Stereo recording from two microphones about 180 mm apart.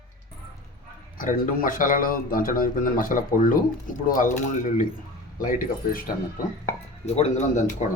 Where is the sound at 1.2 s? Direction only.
50° left (ahead or behind).